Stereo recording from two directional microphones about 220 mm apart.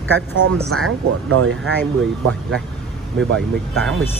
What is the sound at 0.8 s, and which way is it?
Speech, 70° right (ahead or behind).